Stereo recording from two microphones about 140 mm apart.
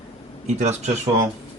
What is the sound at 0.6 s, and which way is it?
Speech, 55° right (ahead or behind).